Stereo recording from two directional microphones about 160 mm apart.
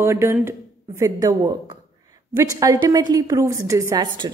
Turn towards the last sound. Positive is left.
turn(degrees=-25)  # may be behind; listen again after turning